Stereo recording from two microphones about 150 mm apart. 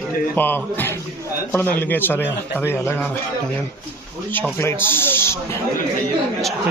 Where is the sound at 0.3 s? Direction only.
15° left (ahead or behind).